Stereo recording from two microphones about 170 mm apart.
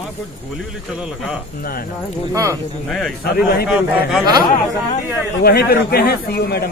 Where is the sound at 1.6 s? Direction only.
60° left (ahead or behind).